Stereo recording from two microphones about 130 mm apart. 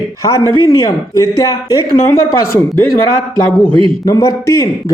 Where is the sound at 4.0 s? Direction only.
25° left (ahead or behind).